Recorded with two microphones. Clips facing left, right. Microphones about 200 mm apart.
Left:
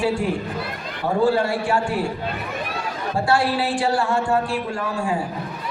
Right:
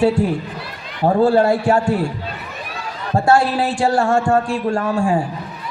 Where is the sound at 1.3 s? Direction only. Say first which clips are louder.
Right 7 dB; 40° right (ahead or behind).